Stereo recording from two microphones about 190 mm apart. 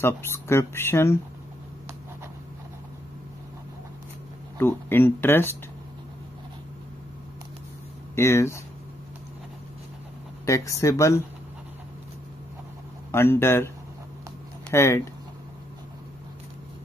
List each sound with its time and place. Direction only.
0.0 s speech: 15° left (ahead or behind)
4.6 s speech: 10° left (ahead or behind)
8.2 s speech: 15° left (ahead or behind)
10.4 s speech: 15° left (ahead or behind)
13.1 s speech: 15° left (ahead or behind)
14.7 s speech: 15° left (ahead or behind)